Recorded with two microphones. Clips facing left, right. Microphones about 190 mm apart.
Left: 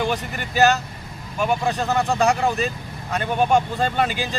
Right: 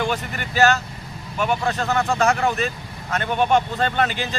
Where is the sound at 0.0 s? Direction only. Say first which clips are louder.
Even; 15° left (ahead or behind).